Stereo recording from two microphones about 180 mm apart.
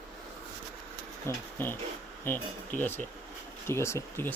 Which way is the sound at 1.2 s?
10° left (ahead or behind).